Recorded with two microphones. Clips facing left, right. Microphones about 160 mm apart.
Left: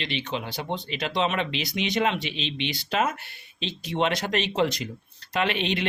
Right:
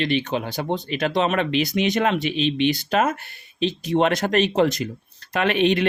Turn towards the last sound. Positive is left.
turn(degrees=-50)  # may be behind; listen again after turning